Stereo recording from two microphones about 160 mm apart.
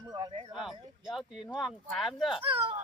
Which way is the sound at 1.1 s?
Centre (ahead or behind).